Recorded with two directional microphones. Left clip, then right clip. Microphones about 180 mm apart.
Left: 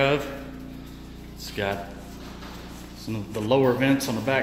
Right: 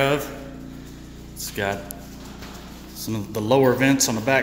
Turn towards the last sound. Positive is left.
turn(degrees=-20)  # may be behind; listen again after turning